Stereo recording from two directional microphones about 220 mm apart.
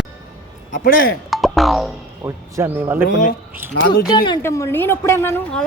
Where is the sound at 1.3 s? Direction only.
Centre (ahead or behind).